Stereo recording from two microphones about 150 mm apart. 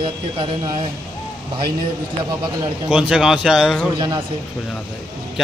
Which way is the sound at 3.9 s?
30° right (ahead or behind).